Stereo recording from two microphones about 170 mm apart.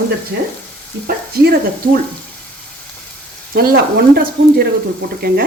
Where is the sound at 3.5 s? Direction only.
70° right (ahead or behind).